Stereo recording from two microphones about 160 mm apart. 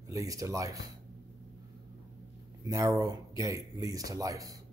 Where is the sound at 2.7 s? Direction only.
20° right (ahead or behind).